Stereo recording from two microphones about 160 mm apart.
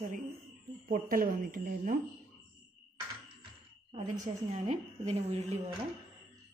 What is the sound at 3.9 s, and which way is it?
A woman's voice, 45° right (ahead or behind).